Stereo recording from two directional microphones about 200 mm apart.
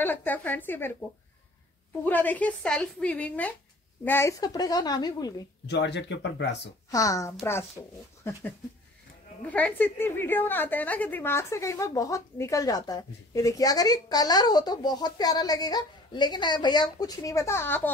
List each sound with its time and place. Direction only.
0.0 s a woman's voice: 10° left (ahead or behind)
2.0 s a woman's voice: 10° left (ahead or behind)
5.7 s speech: 60° left (ahead or behind)
6.9 s a woman's voice: 15° left (ahead or behind)